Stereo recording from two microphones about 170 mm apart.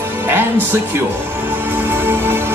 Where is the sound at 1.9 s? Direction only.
15° right (ahead or behind).